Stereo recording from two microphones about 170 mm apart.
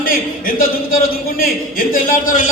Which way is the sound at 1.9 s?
55° left (ahead or behind).